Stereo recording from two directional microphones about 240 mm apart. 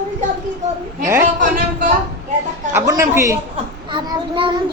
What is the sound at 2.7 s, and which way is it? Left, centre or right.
A man's voice, centre.